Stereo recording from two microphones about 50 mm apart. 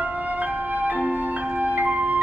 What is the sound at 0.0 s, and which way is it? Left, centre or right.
Music, right.